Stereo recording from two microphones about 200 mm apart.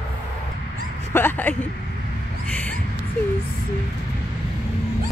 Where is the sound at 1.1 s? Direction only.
10° left (ahead or behind).